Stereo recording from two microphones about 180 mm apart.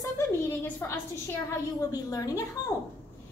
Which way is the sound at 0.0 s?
15° left (ahead or behind).